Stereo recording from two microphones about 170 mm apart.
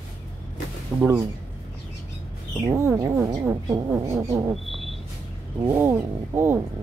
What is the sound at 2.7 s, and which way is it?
Speech, 15° right (ahead or behind).